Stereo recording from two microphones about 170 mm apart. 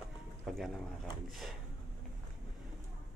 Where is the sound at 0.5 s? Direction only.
Centre (ahead or behind).